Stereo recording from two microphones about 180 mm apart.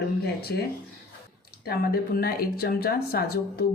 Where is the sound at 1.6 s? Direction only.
55° left (ahead or behind).